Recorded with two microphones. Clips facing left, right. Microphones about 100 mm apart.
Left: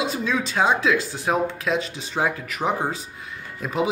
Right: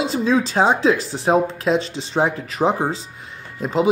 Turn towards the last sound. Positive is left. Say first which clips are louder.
# right 4 dB
turn(degrees=-25)  # may be behind; listen again after turning